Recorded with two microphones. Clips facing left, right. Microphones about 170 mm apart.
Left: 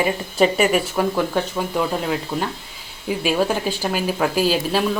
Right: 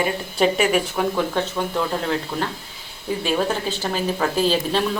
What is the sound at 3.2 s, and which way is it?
Speech, 10° left (ahead or behind).